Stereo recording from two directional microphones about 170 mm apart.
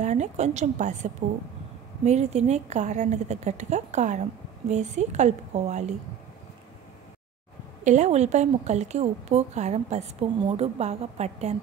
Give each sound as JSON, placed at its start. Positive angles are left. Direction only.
{"t": 0.0, "sound": "a woman's voice", "side_deg": -45}
{"t": 7.8, "sound": "a woman's voice", "side_deg": -45}